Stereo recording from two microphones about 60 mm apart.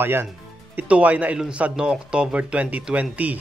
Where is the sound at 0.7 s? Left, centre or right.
Right.